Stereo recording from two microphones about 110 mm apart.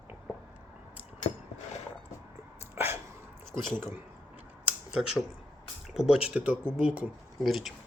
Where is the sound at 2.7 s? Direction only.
20° right (ahead or behind).